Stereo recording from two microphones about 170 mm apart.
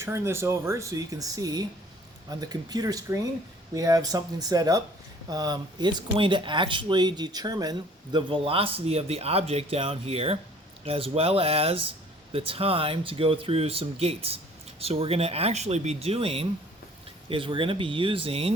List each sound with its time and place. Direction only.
0.0 s speech: 15° right (ahead or behind); by 18.5 s 35° right (ahead or behind)